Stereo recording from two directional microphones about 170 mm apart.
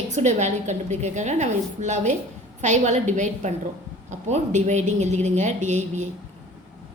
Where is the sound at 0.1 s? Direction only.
45° right (ahead or behind).